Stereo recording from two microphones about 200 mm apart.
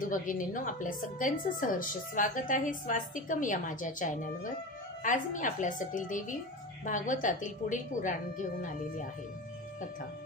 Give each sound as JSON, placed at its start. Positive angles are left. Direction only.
{"t": 0.0, "sound": "a woman's voice", "side_deg": 40}